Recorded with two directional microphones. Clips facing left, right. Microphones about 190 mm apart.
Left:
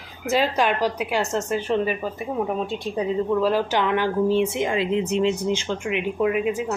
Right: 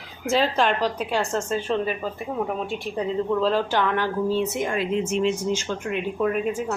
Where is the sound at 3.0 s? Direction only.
10° left (ahead or behind).